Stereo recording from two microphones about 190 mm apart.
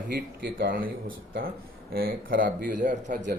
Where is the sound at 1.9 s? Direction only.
50° right (ahead or behind).